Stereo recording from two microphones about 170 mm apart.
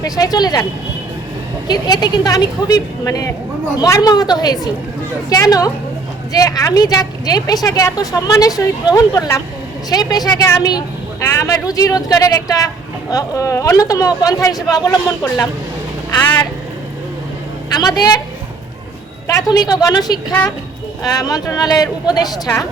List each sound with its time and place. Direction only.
0.0 s speech: 20° left (ahead or behind)
1.6 s speech: 25° left (ahead or behind)
17.7 s speech: 25° left (ahead or behind)
19.3 s speech: 25° left (ahead or behind)